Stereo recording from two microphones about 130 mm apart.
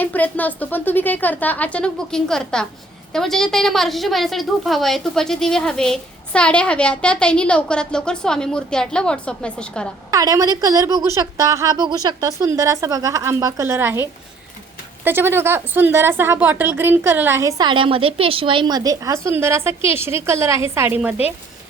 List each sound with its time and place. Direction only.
0.0 s a woman's voice: 15° left (ahead or behind)
10.1 s a woman's voice: 25° right (ahead or behind)
17.6 s a woman's voice: 40° right (ahead or behind); by 21.2 s 10° right (ahead or behind)